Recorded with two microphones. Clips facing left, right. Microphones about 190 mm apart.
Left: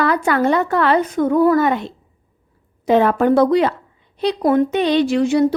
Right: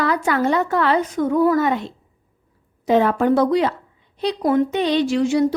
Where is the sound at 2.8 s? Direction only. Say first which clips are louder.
Left 2 dB; 60° left (ahead or behind).